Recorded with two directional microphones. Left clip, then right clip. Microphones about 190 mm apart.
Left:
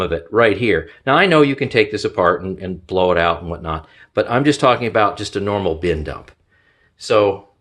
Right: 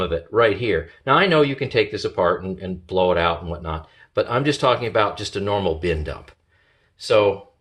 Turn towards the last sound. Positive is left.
turn(degrees=20)  # may be behind; listen again after turning